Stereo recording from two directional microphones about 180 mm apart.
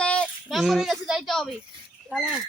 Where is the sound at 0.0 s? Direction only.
5° left (ahead or behind).